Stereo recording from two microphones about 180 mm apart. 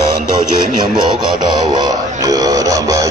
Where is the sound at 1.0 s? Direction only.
25° right (ahead or behind).